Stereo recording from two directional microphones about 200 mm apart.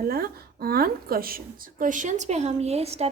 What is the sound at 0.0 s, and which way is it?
A woman's voice, 50° right (ahead or behind).